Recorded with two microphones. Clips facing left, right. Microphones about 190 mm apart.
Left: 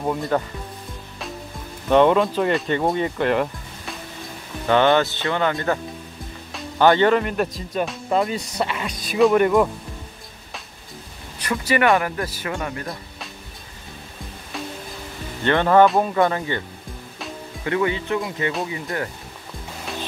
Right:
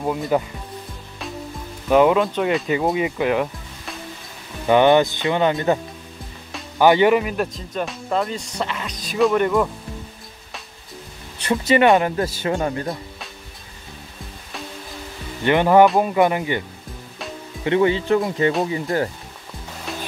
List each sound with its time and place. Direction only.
0.0 s speech: 5° right (ahead or behind)
1.9 s speech: 5° right (ahead or behind)
4.6 s speech: 15° right (ahead or behind)
6.8 s speech: 10° right (ahead or behind); by 9.7 s 10° left (ahead or behind)
11.3 s speech: 25° right (ahead or behind)
15.4 s speech: 15° right (ahead or behind)
17.6 s speech: 30° right (ahead or behind)